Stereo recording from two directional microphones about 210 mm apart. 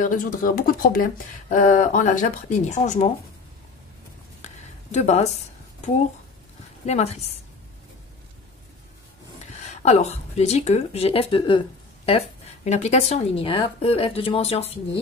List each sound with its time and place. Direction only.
0.0 s speech: 40° left (ahead or behind)
4.4 s a sound: 35° left (ahead or behind)
4.9 s speech: 30° left (ahead or behind)
6.9 s speech: 30° left (ahead or behind)
9.7 s speech: 30° left (ahead or behind)